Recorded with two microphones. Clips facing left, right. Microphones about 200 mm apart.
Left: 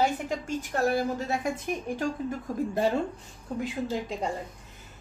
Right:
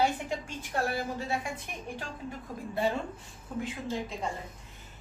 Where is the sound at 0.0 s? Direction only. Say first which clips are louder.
Left 2 dB; 45° left (ahead or behind).